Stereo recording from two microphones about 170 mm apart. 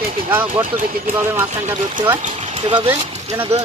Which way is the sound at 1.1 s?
10° right (ahead or behind).